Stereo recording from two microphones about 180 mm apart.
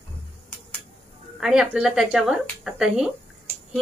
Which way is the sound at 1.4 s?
5° right (ahead or behind).